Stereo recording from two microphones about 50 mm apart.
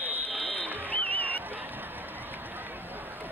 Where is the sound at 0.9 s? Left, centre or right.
Left.